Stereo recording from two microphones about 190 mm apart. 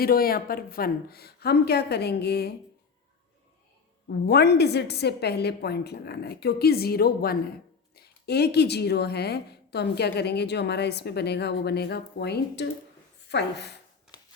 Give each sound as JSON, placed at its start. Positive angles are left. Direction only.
{"t": 0.0, "sound": "a woman's voice", "side_deg": 50}
{"t": 4.1, "sound": "a woman's voice", "side_deg": 60}